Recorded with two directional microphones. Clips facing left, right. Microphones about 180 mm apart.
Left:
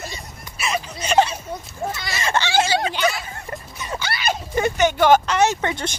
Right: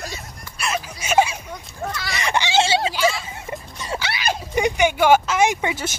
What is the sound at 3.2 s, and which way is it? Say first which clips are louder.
Music: right 1 dB; 20° right (ahead or behind).